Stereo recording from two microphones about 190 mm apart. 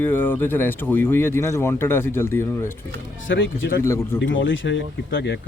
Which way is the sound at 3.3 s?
75° left (ahead or behind).